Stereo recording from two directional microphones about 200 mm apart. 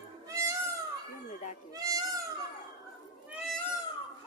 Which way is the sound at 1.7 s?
15° right (ahead or behind).